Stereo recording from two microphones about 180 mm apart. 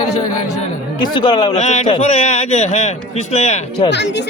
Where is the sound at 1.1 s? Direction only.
25° left (ahead or behind).